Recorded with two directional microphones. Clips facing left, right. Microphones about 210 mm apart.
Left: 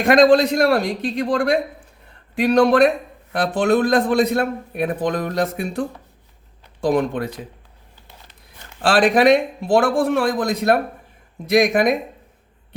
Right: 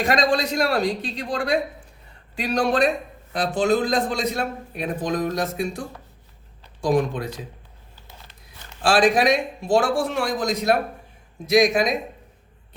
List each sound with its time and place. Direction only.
0.0 s a man's voice: 55° left (ahead or behind)
8.8 s a man's voice: 55° left (ahead or behind)